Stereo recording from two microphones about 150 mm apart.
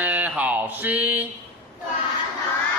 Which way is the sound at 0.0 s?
10° right (ahead or behind).